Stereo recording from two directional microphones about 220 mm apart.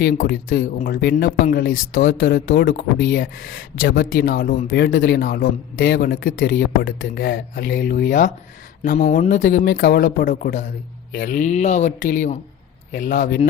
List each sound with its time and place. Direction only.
0.0 s speech: 45° left (ahead or behind)
9.6 s speech: 45° left (ahead or behind)